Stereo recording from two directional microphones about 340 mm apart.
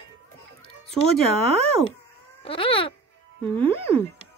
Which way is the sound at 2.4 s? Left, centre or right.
Centre.